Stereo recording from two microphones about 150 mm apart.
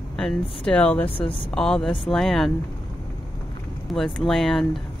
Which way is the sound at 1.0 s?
40° left (ahead or behind).